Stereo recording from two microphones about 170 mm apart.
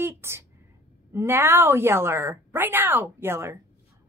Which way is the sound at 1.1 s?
15° right (ahead or behind).